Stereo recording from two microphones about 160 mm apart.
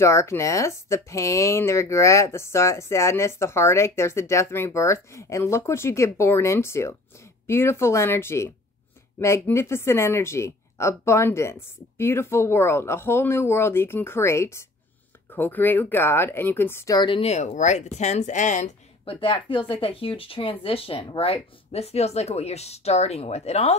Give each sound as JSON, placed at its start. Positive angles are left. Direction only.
{"t": 0.0, "sound": "a woman's voice", "side_deg": 15}
{"t": 19.0, "sound": "speech", "side_deg": 35}